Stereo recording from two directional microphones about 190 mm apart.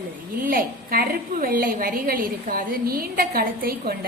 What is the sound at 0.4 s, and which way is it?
A woman's voice, 50° right (ahead or behind).